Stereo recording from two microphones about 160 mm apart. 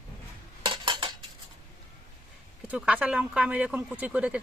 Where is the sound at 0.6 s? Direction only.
30° right (ahead or behind).